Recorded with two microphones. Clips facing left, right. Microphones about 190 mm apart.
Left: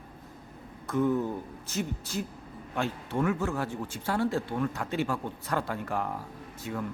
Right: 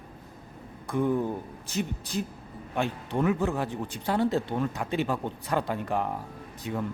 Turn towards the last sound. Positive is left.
turn(degrees=-20)  # may be behind; listen again after turning